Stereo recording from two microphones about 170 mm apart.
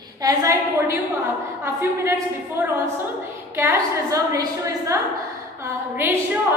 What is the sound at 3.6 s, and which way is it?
A woman's voice, 15° right (ahead or behind).